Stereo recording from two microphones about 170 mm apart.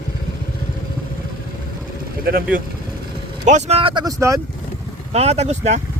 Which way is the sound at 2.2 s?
60° right (ahead or behind).